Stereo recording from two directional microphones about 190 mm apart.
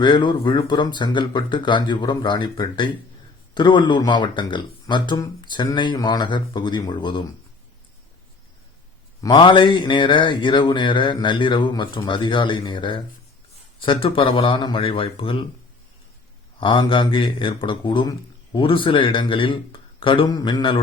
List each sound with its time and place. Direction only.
0.0 s mantra: 25° left (ahead or behind)
9.2 s mantra: 25° left (ahead or behind)
16.6 s mantra: 25° left (ahead or behind)